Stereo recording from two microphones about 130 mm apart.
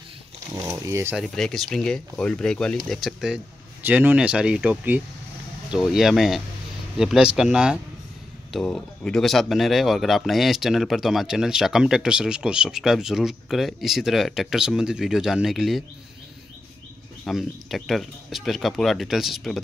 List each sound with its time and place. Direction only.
0.7 s speech: 20° right (ahead or behind)
1.3 s speech: 5° left (ahead or behind)
3.8 s speech: 15° right (ahead or behind)
17.2 s speech: centre (ahead or behind)